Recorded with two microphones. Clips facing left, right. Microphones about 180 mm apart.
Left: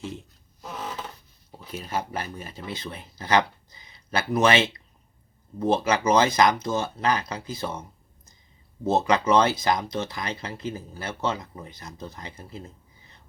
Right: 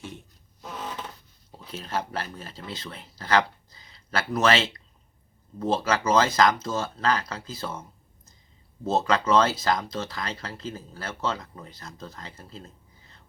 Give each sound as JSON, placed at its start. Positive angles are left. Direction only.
{"t": 1.5, "sound": "speech", "side_deg": 10}